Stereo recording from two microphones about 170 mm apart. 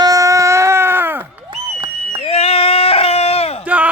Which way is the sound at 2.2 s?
35° left (ahead or behind).